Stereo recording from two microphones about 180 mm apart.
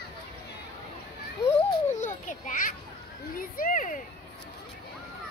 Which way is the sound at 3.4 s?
50° left (ahead or behind).